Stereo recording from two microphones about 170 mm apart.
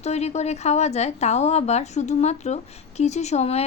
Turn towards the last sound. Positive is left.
turn(degrees=40)  # may be behind; listen again after turning